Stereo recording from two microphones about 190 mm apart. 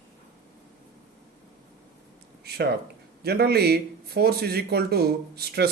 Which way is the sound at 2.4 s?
60° right (ahead or behind).